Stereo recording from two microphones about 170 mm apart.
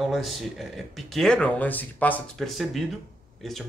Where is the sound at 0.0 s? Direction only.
Centre (ahead or behind).